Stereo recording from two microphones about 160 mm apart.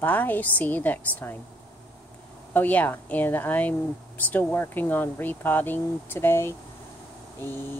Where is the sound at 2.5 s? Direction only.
10° left (ahead or behind).